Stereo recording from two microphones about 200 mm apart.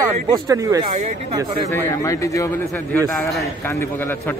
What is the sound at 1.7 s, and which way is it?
A man's voice, 15° left (ahead or behind).